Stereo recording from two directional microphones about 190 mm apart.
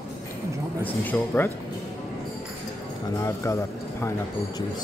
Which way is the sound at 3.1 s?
15° left (ahead or behind).